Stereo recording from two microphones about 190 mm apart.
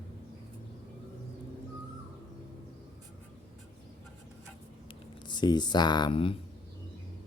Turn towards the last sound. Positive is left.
turn(degrees=25)  # may be behind; listen again after turning